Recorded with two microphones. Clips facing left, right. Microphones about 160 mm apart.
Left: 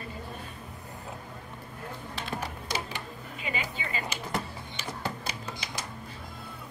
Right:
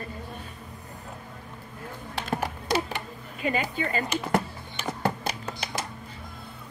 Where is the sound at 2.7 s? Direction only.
55° right (ahead or behind).